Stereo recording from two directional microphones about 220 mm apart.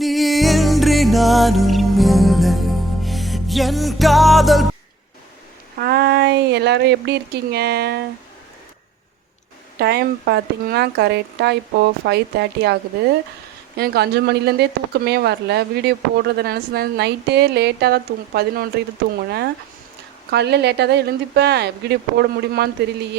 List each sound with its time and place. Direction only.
0.0 s music: centre (ahead or behind)
5.7 s speech: 45° right (ahead or behind)
9.7 s speech: 45° right (ahead or behind)
13.7 s speech: 45° right (ahead or behind)
20.3 s speech: 50° right (ahead or behind)